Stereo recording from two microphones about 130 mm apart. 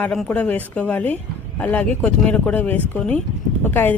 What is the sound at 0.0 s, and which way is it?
Speech, 5° left (ahead or behind).